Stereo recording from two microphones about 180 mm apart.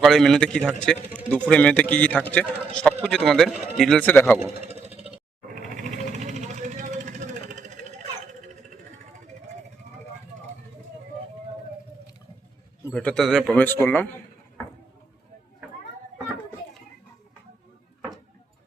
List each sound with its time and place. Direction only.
0.0 s speech: centre (ahead or behind)
4.6 s a sound: 35° right (ahead or behind)
5.5 s vehicle: 45° right (ahead or behind)
12.9 s speech: 5° left (ahead or behind)